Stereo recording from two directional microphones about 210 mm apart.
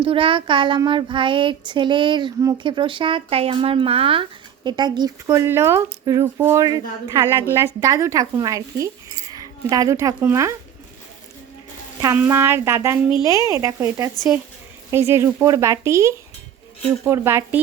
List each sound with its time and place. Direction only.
0.0 s child singing: 25° right (ahead or behind)
7.5 s speech: 15° right (ahead or behind)
12.0 s speech: 10° right (ahead or behind)